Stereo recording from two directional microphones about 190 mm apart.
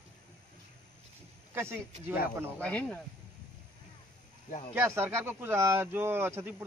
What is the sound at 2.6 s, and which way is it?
Speech, 5° left (ahead or behind).